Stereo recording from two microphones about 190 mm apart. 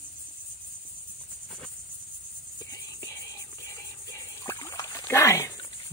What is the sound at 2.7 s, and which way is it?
Music, 15° left (ahead or behind).